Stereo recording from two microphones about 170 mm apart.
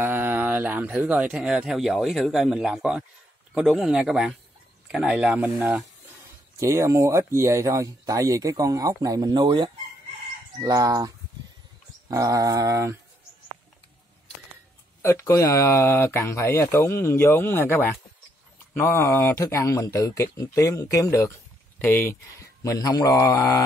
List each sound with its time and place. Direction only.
0.0 s speech: 10° right (ahead or behind)
15.0 s speech: 15° left (ahead or behind)
22.6 s speech: 20° left (ahead or behind)